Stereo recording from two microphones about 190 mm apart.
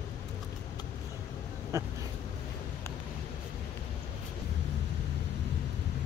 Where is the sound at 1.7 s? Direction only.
15° right (ahead or behind).